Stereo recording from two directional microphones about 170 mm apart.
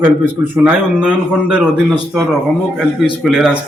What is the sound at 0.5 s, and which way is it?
A man's voice, 10° right (ahead or behind).